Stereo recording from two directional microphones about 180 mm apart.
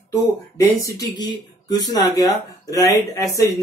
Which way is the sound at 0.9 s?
20° left (ahead or behind).